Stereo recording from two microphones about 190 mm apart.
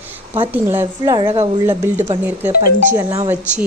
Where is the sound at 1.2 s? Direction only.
30° right (ahead or behind).